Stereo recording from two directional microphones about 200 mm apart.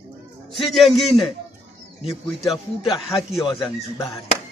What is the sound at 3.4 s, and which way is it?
Speech, 25° left (ahead or behind).